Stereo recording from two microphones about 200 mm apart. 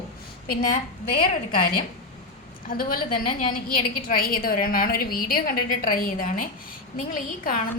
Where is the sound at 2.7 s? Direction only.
45° left (ahead or behind).